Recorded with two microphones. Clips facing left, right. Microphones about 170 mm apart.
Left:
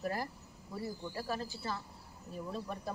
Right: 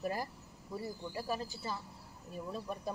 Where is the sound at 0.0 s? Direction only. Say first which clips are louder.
Even; 15° right (ahead or behind).